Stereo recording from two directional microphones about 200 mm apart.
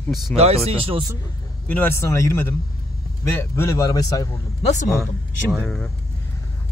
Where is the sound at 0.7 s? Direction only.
30° right (ahead or behind).